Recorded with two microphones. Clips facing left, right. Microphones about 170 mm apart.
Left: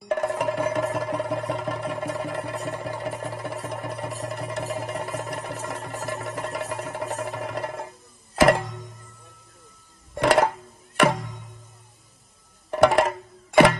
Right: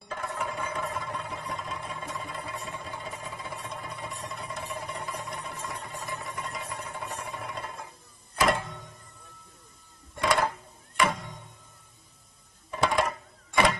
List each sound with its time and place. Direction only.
0.1 s music: 70° left (ahead or behind)
10.1 s music: 70° left (ahead or behind)
12.7 s music: 75° left (ahead or behind)